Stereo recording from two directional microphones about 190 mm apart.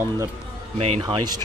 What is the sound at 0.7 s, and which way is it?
Speech, 30° right (ahead or behind).